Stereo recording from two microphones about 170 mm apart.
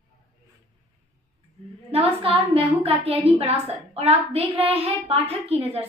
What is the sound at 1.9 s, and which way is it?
A woman's voice, 35° right (ahead or behind).